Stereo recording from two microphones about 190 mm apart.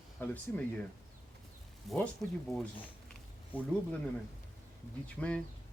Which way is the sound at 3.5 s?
10° left (ahead or behind).